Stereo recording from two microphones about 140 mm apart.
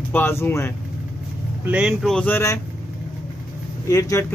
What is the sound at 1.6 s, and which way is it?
Speech, 5° right (ahead or behind).